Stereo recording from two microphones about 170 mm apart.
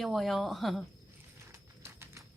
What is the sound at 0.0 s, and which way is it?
Speech, centre (ahead or behind).